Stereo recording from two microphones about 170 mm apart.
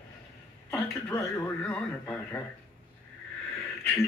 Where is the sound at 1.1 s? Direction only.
10° left (ahead or behind).